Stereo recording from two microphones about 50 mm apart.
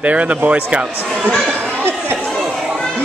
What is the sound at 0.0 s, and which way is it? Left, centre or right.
Speech, right.